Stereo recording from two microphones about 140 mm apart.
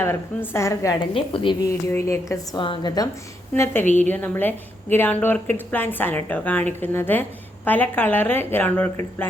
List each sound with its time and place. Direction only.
0.0 s a woman's voice: 15° left (ahead or behind)
1.1 s a woman's voice: 40° left (ahead or behind)
1.6 s a woman's voice: 20° left (ahead or behind)
2.6 s a woman's voice: 35° left (ahead or behind)
3.5 s speech: 15° left (ahead or behind)